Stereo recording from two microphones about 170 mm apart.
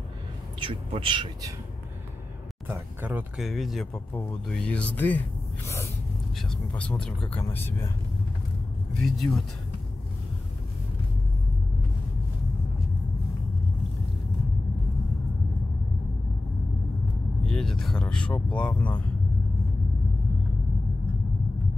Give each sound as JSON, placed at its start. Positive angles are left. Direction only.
{"t": 0.6, "sound": "a man's voice", "side_deg": -30}
{"t": 2.7, "sound": "speech", "side_deg": -10}
{"t": 6.3, "sound": "speech", "side_deg": 5}
{"t": 9.0, "sound": "speech", "side_deg": 0}
{"t": 17.5, "sound": "speech", "side_deg": 0}